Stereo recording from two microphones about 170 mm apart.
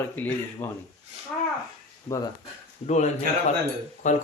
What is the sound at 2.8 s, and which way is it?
A man's voice, 40° left (ahead or behind).